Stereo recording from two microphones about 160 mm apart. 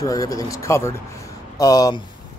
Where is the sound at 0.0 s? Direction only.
20° left (ahead or behind).